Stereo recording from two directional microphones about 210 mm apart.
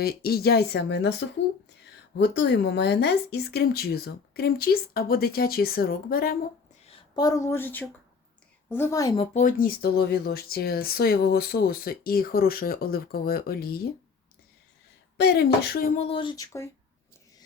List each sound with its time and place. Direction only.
0.0 s speech: 45° left (ahead or behind)
2.1 s speech: 55° left (ahead or behind)
6.8 s a woman's voice: 20° left (ahead or behind)
9.1 s speech: 30° left (ahead or behind); by 13.9 s 45° left (ahead or behind)
15.2 s speech: 50° left (ahead or behind)
16.0 s speech: 25° left (ahead or behind)